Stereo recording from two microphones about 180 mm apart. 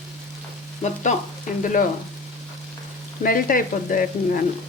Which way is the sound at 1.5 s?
45° left (ahead or behind).